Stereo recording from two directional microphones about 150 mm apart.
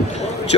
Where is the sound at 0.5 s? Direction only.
40° left (ahead or behind).